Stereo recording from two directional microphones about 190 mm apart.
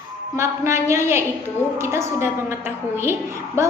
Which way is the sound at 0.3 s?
15° right (ahead or behind).